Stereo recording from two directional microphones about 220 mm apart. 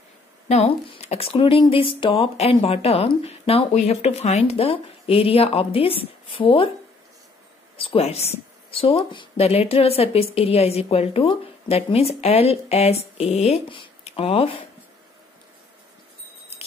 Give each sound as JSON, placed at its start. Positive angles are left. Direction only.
{"t": 0.5, "sound": "speech", "side_deg": 25}
{"t": 7.7, "sound": "speech", "side_deg": 25}